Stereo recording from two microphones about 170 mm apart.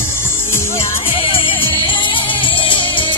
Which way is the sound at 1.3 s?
30° left (ahead or behind).